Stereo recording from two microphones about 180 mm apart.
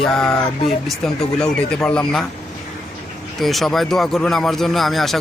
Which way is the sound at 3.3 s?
Centre (ahead or behind).